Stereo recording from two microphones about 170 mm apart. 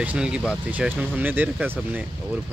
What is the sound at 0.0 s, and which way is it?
Speech, 5° right (ahead or behind).